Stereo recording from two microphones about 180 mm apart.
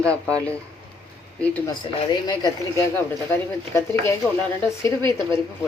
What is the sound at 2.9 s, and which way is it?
Speech, 15° left (ahead or behind).